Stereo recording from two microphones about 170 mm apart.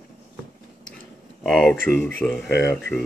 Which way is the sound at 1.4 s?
5° left (ahead or behind).